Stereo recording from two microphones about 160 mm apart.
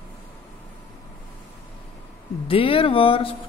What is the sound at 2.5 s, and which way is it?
Speech, 35° left (ahead or behind).